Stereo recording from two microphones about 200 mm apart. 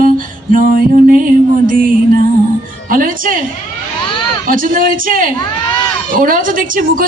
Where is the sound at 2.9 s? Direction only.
45° right (ahead or behind).